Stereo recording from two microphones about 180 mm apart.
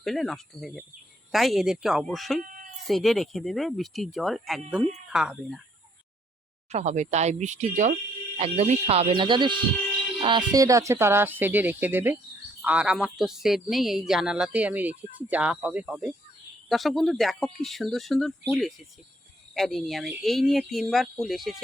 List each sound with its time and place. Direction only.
0.0 s speech: centre (ahead or behind)
6.7 s speech: 40° right (ahead or behind); by 21.6 s centre (ahead or behind)